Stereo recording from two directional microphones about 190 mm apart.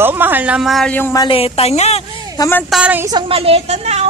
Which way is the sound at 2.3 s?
15° left (ahead or behind).